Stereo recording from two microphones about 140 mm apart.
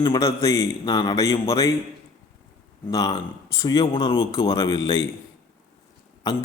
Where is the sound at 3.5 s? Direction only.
25° left (ahead or behind).